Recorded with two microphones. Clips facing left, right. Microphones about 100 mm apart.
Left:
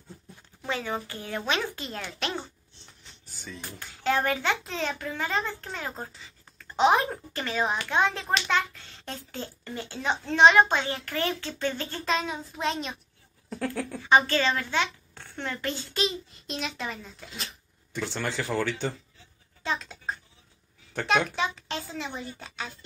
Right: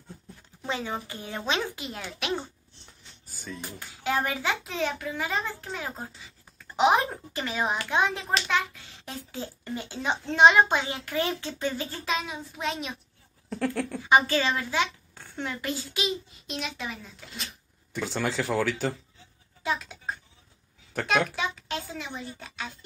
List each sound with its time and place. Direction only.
0.7 s a child's voice: 20° right (ahead or behind)
3.3 s dishes: centre (ahead or behind)
3.6 s a child's voice: 10° right (ahead or behind)
8.3 s a child's voice: 5° right (ahead or behind)
13.9 s a woman's voice: 15° right (ahead or behind)